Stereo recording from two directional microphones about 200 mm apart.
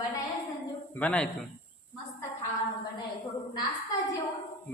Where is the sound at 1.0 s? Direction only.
5° left (ahead or behind).